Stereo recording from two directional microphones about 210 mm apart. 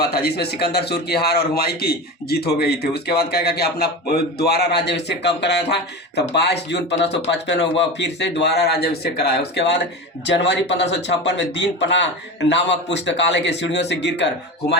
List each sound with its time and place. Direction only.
0.0 s a man's voice: 50° left (ahead or behind)